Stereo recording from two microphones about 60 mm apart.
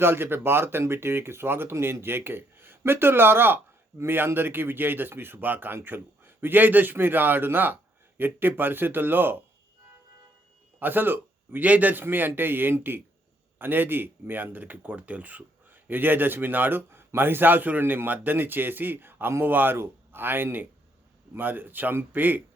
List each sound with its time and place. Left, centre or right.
0.0 s speech: right
10.8 s a man's voice: right